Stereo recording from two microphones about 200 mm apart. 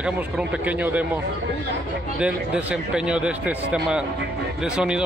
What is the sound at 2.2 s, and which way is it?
Speech, 5° right (ahead or behind).